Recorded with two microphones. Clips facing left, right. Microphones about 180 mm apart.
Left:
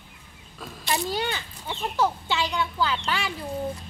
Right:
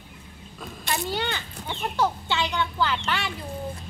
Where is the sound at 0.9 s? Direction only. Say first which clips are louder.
Left 1 dB; 10° left (ahead or behind).